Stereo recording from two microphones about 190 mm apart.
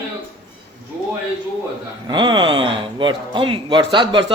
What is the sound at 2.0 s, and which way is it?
Speech, 25° right (ahead or behind).